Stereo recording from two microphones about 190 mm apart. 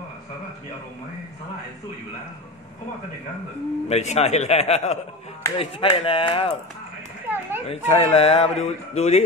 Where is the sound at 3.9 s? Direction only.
35° left (ahead or behind).